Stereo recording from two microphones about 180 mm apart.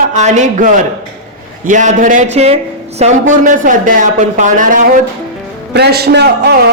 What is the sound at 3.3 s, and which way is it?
A man's voice, 45° right (ahead or behind).